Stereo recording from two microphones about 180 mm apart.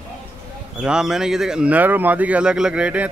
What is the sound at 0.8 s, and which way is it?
A man's voice, 5° right (ahead or behind).